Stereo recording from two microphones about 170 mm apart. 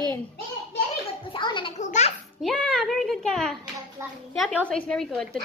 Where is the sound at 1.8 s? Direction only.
45° left (ahead or behind).